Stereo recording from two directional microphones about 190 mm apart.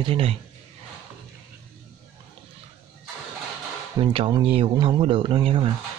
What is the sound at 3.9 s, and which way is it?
Speech, 25° right (ahead or behind).